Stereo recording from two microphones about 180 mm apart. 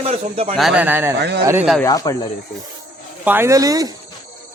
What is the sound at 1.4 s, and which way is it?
Speech, 15° right (ahead or behind).